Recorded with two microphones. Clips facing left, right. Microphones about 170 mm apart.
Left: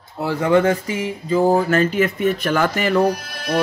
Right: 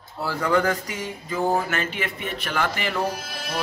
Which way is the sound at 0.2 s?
20° left (ahead or behind).